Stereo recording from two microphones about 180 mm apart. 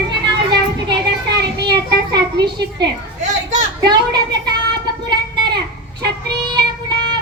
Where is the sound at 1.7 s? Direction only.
25° right (ahead or behind).